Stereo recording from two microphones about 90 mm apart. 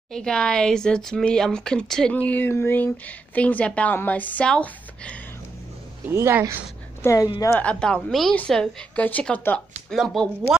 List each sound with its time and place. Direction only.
0.1 s a woman's voice: 10° left (ahead or behind)
6.0 s speech: 25° right (ahead or behind)
7.0 s speech: 35° left (ahead or behind)
7.5 s a woman's voice: 15° left (ahead or behind)
8.1 s a woman's voice: centre (ahead or behind)